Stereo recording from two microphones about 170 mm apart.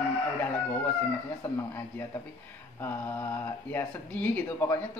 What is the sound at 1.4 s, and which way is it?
Speech, 10° left (ahead or behind).